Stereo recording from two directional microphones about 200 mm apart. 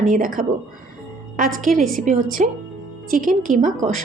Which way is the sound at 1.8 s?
40° right (ahead or behind).